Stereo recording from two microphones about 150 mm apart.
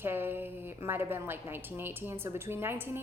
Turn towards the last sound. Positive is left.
turn(degrees=-15)  # may be behind; listen again after turning